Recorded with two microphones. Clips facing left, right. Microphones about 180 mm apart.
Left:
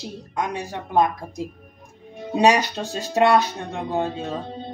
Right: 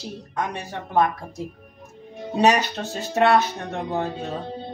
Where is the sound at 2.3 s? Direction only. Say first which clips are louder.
Left 1 dB; 15° left (ahead or behind).